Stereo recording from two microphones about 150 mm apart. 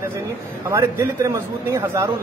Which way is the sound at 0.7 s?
15° right (ahead or behind).